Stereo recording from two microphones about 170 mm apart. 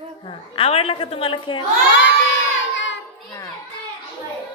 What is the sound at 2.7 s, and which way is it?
Child singing, 90° left.